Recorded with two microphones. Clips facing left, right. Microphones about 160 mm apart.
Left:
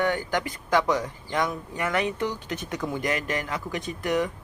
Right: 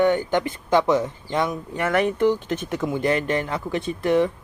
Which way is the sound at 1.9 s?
50° right (ahead or behind).